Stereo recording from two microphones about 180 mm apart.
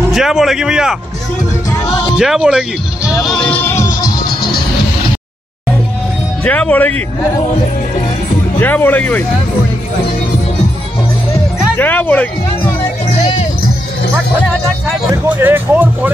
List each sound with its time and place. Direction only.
0.1 s speech: centre (ahead or behind)
2.1 s speech: 5° right (ahead or behind)
3.3 s music: 5° left (ahead or behind); by 4.3 s 20° left (ahead or behind)
4.3 s music: 55° left (ahead or behind)
6.4 s speech: 10° left (ahead or behind)
8.5 s speech: 10° left (ahead or behind)
11.7 s speech: 10° left (ahead or behind)
15.2 s speech: 10° right (ahead or behind)